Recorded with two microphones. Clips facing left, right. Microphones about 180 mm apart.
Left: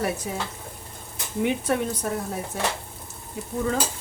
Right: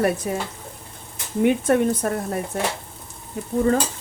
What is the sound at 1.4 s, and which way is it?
Stir, 50° right (ahead or behind).